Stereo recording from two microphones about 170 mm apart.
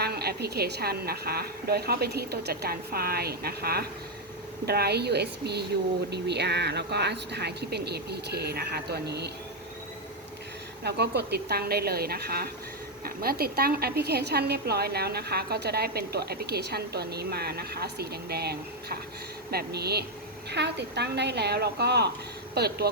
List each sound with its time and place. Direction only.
0.0 s a woman's voice: 65° right (ahead or behind)
10.8 s a woman's voice: 80° right
20.5 s a woman's voice: 85° right